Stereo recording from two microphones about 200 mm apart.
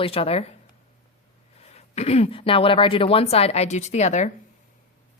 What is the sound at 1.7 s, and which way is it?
Speech, 30° left (ahead or behind).